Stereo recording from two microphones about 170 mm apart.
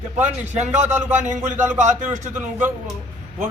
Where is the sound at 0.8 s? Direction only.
15° right (ahead or behind).